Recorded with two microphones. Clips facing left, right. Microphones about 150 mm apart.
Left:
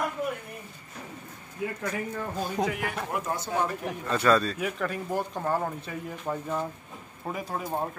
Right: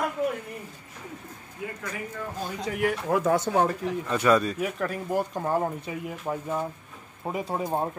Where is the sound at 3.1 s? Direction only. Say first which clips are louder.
Right 10 dB; 90° right.